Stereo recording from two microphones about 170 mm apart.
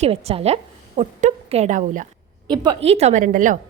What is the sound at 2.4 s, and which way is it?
A woman's voice, 25° right (ahead or behind).